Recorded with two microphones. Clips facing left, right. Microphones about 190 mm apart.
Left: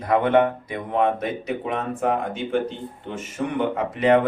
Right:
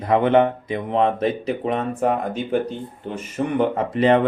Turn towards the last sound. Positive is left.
turn(degrees=-30)  # may be behind; listen again after turning